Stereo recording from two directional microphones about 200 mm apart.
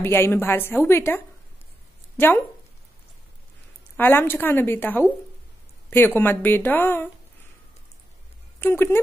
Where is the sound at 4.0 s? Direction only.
10° left (ahead or behind).